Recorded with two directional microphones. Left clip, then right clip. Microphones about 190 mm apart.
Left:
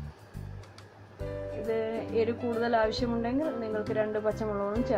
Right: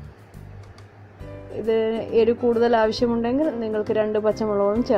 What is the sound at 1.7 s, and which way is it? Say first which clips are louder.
Speech: right 10 dB; 25° right (ahead or behind).